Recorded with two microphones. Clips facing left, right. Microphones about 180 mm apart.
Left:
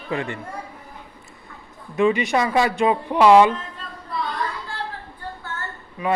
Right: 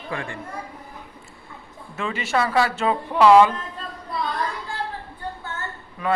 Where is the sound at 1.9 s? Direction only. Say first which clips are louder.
Left 6 dB; 15° left (ahead or behind).